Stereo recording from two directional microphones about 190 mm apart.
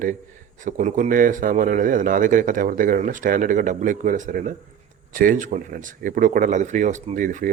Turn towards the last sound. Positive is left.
turn(degrees=-45)  # may be behind; listen again after turning